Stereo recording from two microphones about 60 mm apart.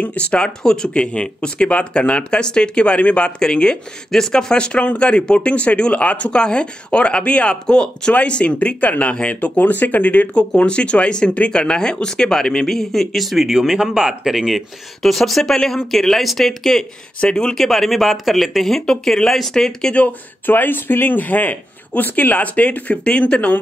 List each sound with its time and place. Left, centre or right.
0.0 s speech: left; by 16.8 s centre
17.2 s speech: centre
17.6 s speech: centre
19.9 s speech: left
20.4 s speech: left